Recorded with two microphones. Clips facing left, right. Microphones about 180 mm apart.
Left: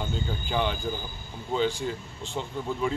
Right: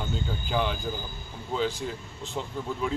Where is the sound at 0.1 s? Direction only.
Centre (ahead or behind).